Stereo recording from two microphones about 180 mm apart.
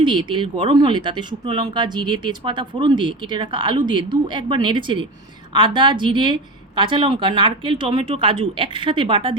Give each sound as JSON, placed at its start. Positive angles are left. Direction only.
{"t": 0.0, "sound": "speech", "side_deg": -25}